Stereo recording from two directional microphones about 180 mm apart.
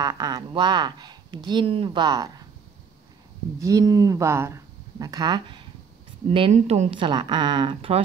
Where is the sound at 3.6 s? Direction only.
20° right (ahead or behind).